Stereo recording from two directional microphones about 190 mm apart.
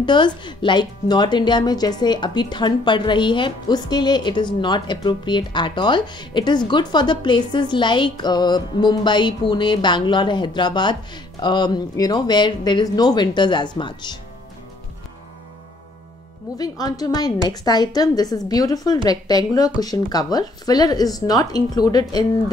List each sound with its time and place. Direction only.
0.0 s speech: 25° left (ahead or behind)
16.5 s speech: 20° left (ahead or behind)